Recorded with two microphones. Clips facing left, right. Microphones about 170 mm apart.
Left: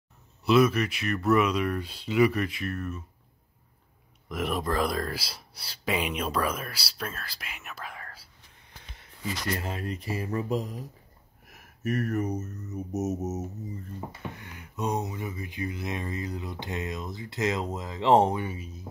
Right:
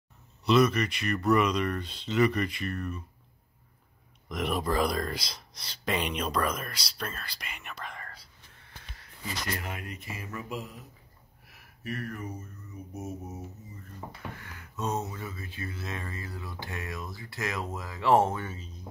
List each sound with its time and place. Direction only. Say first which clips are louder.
0.5 s speech: left 2 dB; 5° left (ahead or behind)
4.3 s speech: even; centre (ahead or behind)
8.9 s speech: left 4 dB; 25° left (ahead or behind)
11.4 s mantra: left 7 dB; 45° left (ahead or behind)
14.3 s speech: left 2 dB; 20° left (ahead or behind)